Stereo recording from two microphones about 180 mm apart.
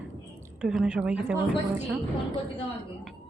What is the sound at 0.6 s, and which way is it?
Speech, 5° right (ahead or behind).